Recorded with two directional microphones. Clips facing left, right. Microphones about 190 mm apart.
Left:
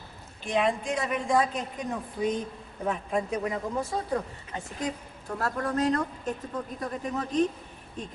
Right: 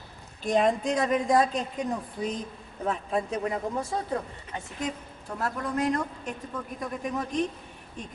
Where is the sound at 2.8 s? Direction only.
30° right (ahead or behind).